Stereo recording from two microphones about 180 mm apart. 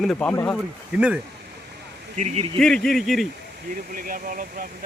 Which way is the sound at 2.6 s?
5° left (ahead or behind).